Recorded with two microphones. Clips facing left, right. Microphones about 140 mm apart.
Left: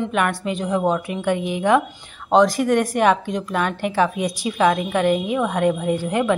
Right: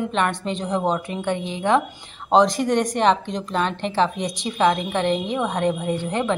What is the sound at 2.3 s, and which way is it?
A woman's voice, centre (ahead or behind).